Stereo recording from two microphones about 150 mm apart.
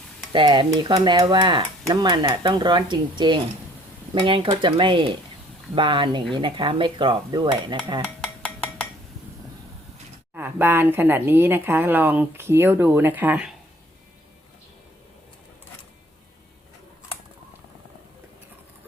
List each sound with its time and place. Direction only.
0.3 s cutlery: 30° right (ahead or behind)
8.0 s dishes: 5° left (ahead or behind)
10.3 s speech: 15° right (ahead or behind)